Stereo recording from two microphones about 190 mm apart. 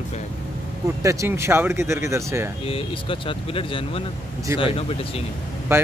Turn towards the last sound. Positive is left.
turn(degrees=-15)  # may be behind; listen again after turning